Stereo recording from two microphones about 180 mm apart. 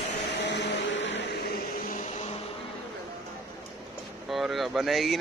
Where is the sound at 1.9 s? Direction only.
40° left (ahead or behind).